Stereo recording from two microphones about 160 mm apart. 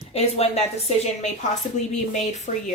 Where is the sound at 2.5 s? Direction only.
55° left (ahead or behind).